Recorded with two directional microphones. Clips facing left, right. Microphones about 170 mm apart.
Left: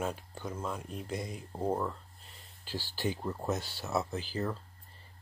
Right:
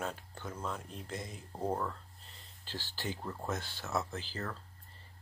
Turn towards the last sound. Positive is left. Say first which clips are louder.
# left 6 dB
turn(degrees=15)  # may be behind; listen again after turning